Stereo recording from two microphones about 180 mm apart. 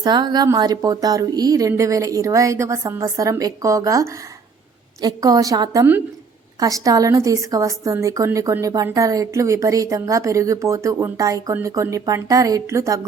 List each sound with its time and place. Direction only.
0.0 s a woman's voice: 25° right (ahead or behind)